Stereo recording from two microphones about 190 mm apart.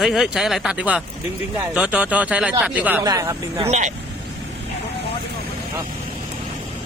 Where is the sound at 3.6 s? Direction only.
35° right (ahead or behind).